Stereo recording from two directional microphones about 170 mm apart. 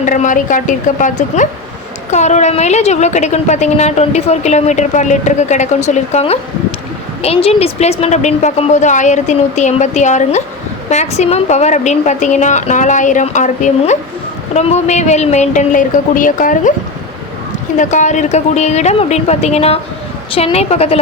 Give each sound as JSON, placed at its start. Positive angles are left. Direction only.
{"t": 0.0, "sound": "a woman's voice", "side_deg": 50}
{"t": 17.7, "sound": "a woman's voice", "side_deg": 45}